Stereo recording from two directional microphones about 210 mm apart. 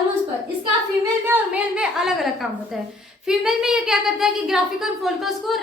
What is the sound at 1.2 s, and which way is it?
Speech, 10° right (ahead or behind).